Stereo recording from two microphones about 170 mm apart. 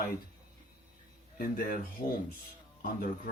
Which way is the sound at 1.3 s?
55° left (ahead or behind).